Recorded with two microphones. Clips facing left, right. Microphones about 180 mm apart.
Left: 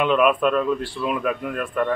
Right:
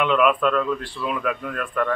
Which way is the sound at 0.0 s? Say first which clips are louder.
Left 1 dB; 15° left (ahead or behind).